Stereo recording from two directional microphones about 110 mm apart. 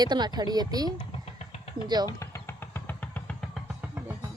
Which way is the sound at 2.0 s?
25° left (ahead or behind).